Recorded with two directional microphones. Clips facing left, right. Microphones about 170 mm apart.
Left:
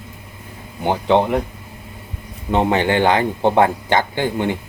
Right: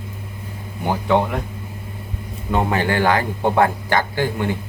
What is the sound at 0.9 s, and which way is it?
Speech, 25° left (ahead or behind).